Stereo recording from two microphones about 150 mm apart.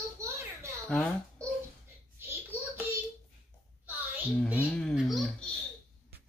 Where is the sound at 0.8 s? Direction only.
5° left (ahead or behind).